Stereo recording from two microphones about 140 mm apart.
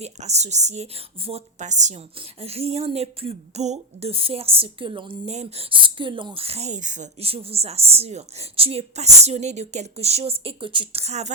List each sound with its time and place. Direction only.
0.0 s a woman's voice: 50° right (ahead or behind)
2.1 s a woman's voice: 45° right (ahead or behind)
5.7 s a woman's voice: 35° right (ahead or behind); by 7.1 s 60° right (ahead or behind)
7.2 s a woman's voice: 45° right (ahead or behind)